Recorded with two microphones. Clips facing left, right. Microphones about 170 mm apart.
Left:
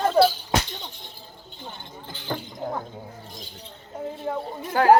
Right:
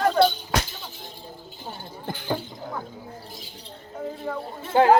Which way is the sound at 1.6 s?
50° right (ahead or behind).